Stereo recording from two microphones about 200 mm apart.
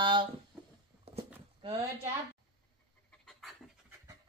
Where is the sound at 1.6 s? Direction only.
25° right (ahead or behind).